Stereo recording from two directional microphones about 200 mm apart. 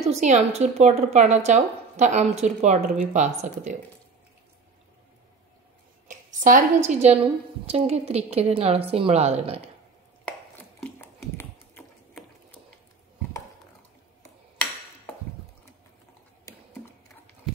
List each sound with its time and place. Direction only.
0.1 s a woman's voice: 35° right (ahead or behind)
6.0 s a woman's voice: 40° right (ahead or behind)
10.2 s a sound: 10° left (ahead or behind)